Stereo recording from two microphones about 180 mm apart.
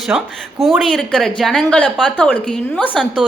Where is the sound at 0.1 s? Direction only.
5° right (ahead or behind).